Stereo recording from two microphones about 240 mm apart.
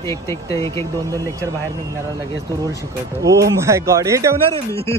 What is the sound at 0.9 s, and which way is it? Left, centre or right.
Speech, centre.